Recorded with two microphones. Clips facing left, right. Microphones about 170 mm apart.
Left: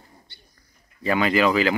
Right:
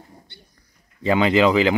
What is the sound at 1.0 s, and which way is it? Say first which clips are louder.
Speech: right 3 dB; 20° right (ahead or behind).